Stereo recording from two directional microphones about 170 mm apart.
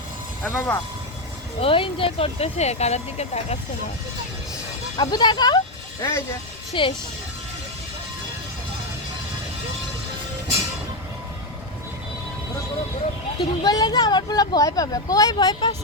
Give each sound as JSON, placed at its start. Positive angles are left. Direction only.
{"t": 0.4, "sound": "speech", "side_deg": 15}
{"t": 1.6, "sound": "speech", "side_deg": 30}
{"t": 4.9, "sound": "speech", "side_deg": 25}
{"t": 6.0, "sound": "speech", "side_deg": 15}
{"t": 6.7, "sound": "speech", "side_deg": 30}
{"t": 13.4, "sound": "speech", "side_deg": 25}